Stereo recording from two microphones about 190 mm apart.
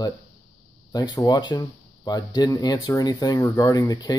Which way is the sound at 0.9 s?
20° left (ahead or behind).